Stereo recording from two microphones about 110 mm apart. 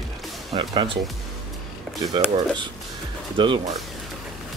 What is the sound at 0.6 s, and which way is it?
Speech, 45° right (ahead or behind).